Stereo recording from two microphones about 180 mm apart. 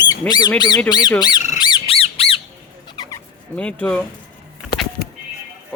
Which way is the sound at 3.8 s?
5° left (ahead or behind).